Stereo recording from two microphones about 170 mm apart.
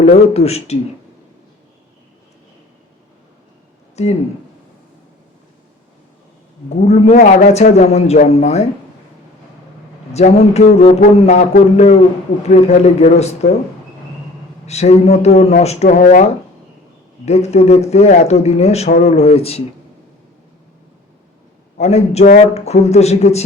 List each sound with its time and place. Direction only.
0.0 s speech: 35° left (ahead or behind)
4.0 s speech: 40° left (ahead or behind)
6.7 s speech: 40° left (ahead or behind)
10.2 s speech: 40° left (ahead or behind)
12.5 s speech: 40° left (ahead or behind)
14.7 s speech: 40° left (ahead or behind)
16.0 s speech: 50° left (ahead or behind)
17.2 s speech: 40° left (ahead or behind)
18.9 s speech: 65° left (ahead or behind)
19.1 s speech: 35° left (ahead or behind)
21.8 s speech: 40° left (ahead or behind)